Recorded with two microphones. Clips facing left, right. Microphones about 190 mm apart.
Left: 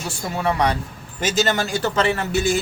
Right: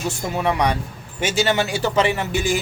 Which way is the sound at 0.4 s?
10° right (ahead or behind).